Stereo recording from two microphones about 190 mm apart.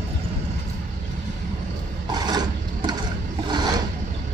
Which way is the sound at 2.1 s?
20° right (ahead or behind).